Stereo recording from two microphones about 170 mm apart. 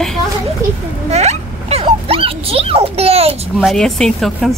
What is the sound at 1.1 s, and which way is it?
Speech, 40° right (ahead or behind).